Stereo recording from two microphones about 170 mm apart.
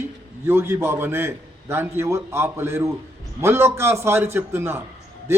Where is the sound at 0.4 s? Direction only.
15° right (ahead or behind).